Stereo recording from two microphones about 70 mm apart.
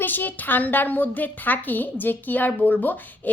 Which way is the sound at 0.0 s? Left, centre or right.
Left.